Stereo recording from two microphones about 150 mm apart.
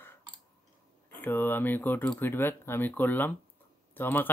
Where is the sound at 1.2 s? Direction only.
15° left (ahead or behind).